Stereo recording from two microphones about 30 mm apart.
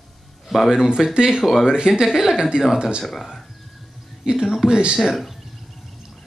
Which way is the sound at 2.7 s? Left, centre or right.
Right.